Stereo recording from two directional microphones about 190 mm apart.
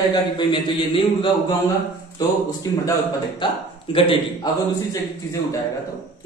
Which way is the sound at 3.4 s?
25° left (ahead or behind).